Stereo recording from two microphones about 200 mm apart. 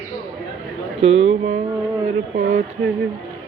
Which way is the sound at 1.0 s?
30° right (ahead or behind).